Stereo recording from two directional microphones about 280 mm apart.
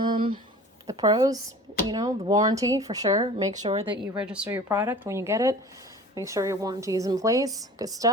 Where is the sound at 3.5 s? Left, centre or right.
Right.